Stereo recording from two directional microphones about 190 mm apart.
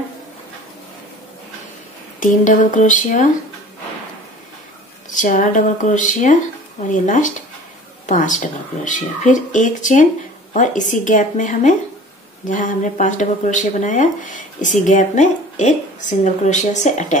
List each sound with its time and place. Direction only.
2.1 s speech: 40° left (ahead or behind)
5.1 s speech: 40° left (ahead or behind)